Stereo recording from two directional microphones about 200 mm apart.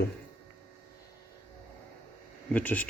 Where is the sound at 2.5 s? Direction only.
10° left (ahead or behind).